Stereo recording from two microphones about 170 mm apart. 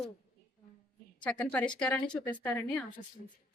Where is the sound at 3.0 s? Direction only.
45° left (ahead or behind).